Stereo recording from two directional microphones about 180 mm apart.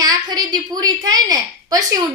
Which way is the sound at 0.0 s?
20° right (ahead or behind).